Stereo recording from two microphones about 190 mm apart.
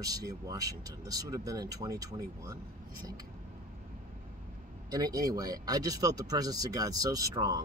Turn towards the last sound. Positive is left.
turn(degrees=-20)  # may be behind; listen again after turning